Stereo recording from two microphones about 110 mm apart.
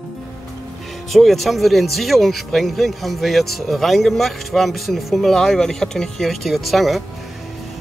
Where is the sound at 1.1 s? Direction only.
Centre (ahead or behind).